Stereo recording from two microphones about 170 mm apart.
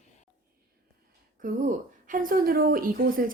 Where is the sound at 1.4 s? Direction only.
50° right (ahead or behind).